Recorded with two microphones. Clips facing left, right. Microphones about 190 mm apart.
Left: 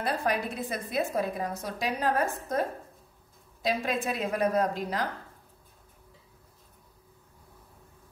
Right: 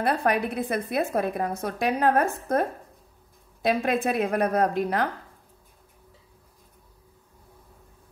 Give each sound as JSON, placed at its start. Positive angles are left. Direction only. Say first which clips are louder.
{"t": 0.0, "sound": "a woman's voice", "louder": "right 5 dB", "side_deg": -60}
{"t": 3.6, "sound": "a woman's voice", "louder": "right 5 dB", "side_deg": -55}